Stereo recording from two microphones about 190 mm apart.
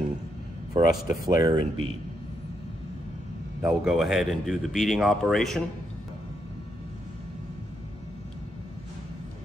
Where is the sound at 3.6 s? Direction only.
Centre (ahead or behind).